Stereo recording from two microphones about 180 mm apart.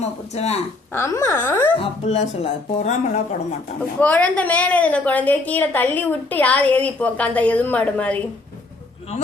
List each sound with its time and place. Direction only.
0.0 s speech: 35° left (ahead or behind)
0.9 s a woman's voice: 15° left (ahead or behind)
1.8 s speech: 35° left (ahead or behind)
4.0 s a woman's voice: 10° left (ahead or behind)